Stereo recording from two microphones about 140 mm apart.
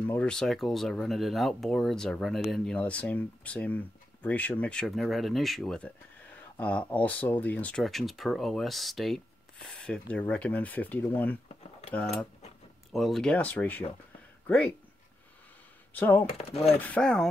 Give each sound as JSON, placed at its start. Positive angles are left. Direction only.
{"t": 0.0, "sound": "speech", "side_deg": 10}
{"t": 12.9, "sound": "speech", "side_deg": 0}
{"t": 15.9, "sound": "speech", "side_deg": 15}
{"t": 16.3, "sound": "speech", "side_deg": 50}
{"t": 16.8, "sound": "speech", "side_deg": 10}